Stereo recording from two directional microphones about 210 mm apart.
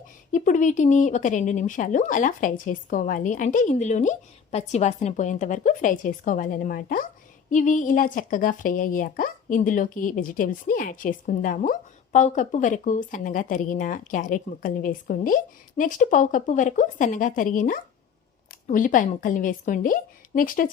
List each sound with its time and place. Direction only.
0.3 s a woman's voice: 35° left (ahead or behind)